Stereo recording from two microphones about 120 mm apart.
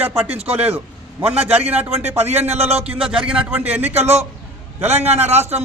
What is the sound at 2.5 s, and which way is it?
Speech, 60° right (ahead or behind).